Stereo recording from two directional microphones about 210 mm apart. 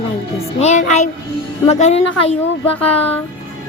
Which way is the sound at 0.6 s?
35° left (ahead or behind).